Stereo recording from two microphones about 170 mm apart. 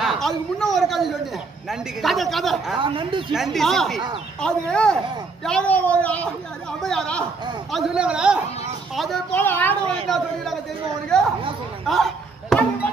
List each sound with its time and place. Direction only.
0.0 s a woman's voice: centre (ahead or behind)
2.8 s speech: 30° right (ahead or behind)
3.3 s a woman's voice: centre (ahead or behind)
9.4 s speech: 10° left (ahead or behind)
10.0 s a woman's voice: centre (ahead or behind)
11.8 s a sound: centre (ahead or behind)